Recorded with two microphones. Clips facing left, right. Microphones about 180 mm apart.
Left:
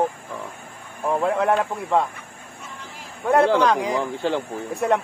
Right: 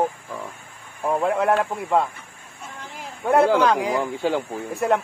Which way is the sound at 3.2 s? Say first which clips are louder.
Even; centre (ahead or behind).